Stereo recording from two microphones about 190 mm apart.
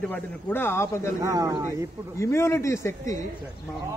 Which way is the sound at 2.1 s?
15° left (ahead or behind).